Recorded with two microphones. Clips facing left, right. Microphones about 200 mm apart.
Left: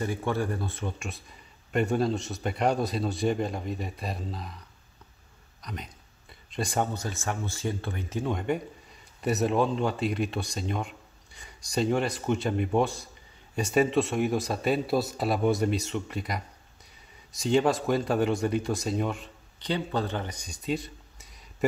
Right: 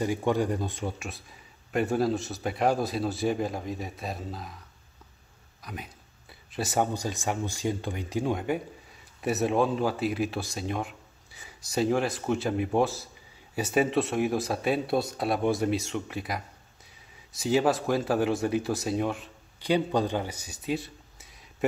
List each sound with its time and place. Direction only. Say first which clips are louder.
0.0 s speech: right 3 dB; 15° right (ahead or behind)
0.9 s speech: even; centre (ahead or behind)
5.6 s speech: even; 5° right (ahead or behind)
19.7 s speech: right 4 dB; 15° right (ahead or behind)